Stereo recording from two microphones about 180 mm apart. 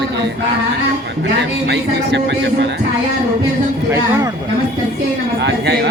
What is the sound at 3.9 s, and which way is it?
Speech, 15° right (ahead or behind).